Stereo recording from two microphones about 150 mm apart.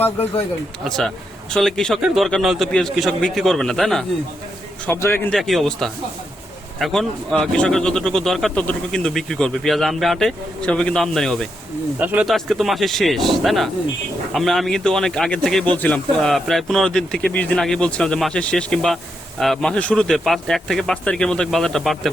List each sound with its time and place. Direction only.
0.9 s speech: 5° left (ahead or behind)
4.9 s a man's voice: 15° left (ahead or behind)
5.3 s speech: centre (ahead or behind)
11.9 s speech: 10° right (ahead or behind)